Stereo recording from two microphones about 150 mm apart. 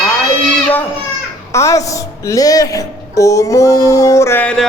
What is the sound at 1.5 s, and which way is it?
Speech, 20° left (ahead or behind).